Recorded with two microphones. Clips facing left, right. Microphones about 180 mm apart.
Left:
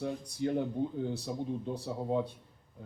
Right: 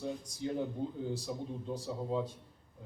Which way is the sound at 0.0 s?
65° left (ahead or behind).